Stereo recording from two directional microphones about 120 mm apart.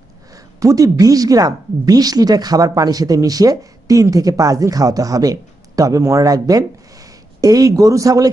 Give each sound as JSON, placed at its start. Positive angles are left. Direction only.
{"t": 0.6, "sound": "speech", "side_deg": -30}